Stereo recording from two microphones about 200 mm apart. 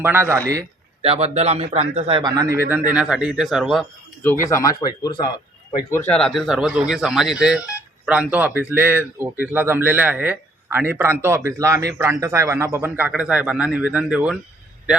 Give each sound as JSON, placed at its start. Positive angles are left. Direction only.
{"t": 0.0, "sound": "speech", "side_deg": -10}
{"t": 1.0, "sound": "a man's voice", "side_deg": -30}
{"t": 4.4, "sound": "speech", "side_deg": 15}
{"t": 5.9, "sound": "speech", "side_deg": 10}